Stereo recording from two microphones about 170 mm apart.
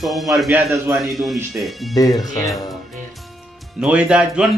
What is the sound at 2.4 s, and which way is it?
Speech, centre (ahead or behind).